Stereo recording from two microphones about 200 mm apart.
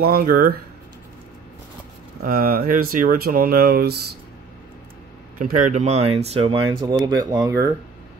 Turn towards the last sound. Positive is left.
turn(degrees=-20)  # may be behind; listen again after turning